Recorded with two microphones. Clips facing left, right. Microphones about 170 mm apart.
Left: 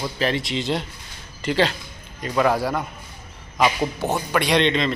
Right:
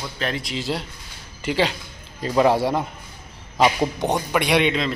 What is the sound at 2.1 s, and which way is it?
A man's voice, 30° right (ahead or behind).